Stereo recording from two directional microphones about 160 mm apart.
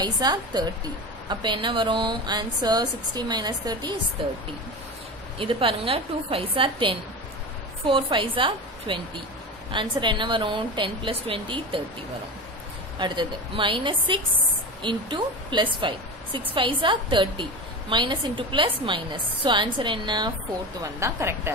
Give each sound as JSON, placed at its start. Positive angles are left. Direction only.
{"t": 0.0, "sound": "a woman's voice", "side_deg": -25}
{"t": 5.4, "sound": "a woman's voice", "side_deg": -35}
{"t": 13.0, "sound": "a woman's voice", "side_deg": -30}
{"t": 21.0, "sound": "speech", "side_deg": -15}